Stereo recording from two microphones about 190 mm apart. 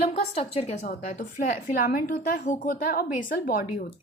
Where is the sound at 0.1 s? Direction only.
35° left (ahead or behind).